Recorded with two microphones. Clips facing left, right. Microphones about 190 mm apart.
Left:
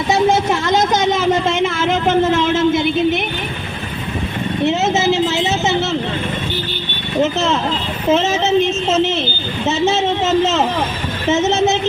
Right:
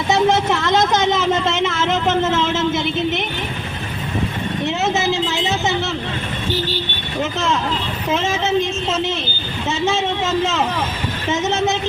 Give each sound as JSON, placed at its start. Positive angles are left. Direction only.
{"t": 1.1, "sound": "speech", "side_deg": 10}
{"t": 4.6, "sound": "a woman's voice", "side_deg": 20}
{"t": 7.2, "sound": "speech", "side_deg": 25}